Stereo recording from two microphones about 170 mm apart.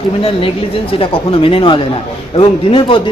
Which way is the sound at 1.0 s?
30° left (ahead or behind).